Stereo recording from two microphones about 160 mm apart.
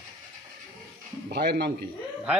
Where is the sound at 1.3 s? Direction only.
85° right.